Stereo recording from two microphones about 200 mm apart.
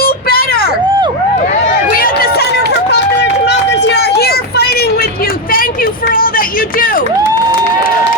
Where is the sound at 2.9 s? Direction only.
60° left (ahead or behind).